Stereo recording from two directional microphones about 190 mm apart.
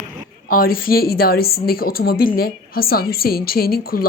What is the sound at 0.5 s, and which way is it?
A woman's voice, 50° left (ahead or behind).